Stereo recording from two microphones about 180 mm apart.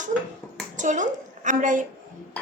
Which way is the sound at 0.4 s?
Centre (ahead or behind).